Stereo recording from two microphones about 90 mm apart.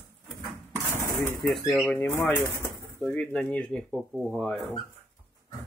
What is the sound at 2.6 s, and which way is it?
Bird, 25° left (ahead or behind).